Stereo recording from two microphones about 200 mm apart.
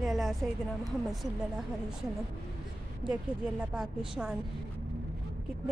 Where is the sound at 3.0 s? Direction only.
25° right (ahead or behind).